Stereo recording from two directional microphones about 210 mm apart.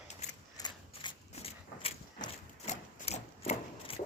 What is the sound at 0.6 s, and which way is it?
Mechanisms, 20° left (ahead or behind).